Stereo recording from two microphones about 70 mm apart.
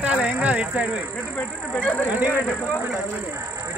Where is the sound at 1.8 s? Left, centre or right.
Centre.